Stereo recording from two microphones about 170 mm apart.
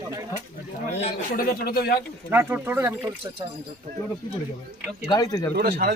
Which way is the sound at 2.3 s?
10° right (ahead or behind).